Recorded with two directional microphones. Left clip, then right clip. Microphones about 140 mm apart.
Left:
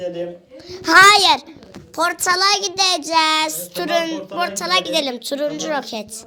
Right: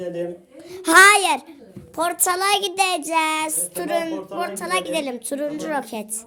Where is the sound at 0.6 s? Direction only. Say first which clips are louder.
Left 2 dB; 25° right (ahead or behind).